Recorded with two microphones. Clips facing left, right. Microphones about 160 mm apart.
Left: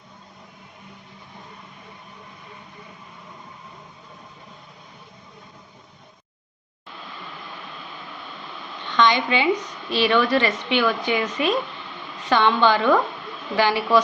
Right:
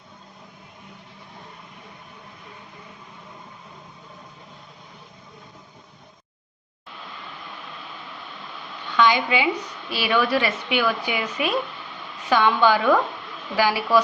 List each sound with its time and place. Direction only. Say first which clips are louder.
8.9 s a woman's voice: even; 10° right (ahead or behind)